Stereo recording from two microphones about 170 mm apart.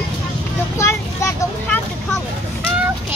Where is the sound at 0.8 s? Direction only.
15° left (ahead or behind).